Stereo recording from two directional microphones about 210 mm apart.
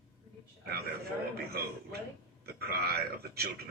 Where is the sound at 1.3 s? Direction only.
50° right (ahead or behind).